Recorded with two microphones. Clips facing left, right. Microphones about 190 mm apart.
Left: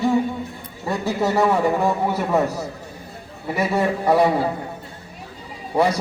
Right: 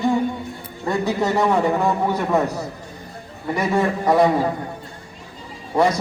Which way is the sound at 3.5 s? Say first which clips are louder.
Even; 5° left (ahead or behind).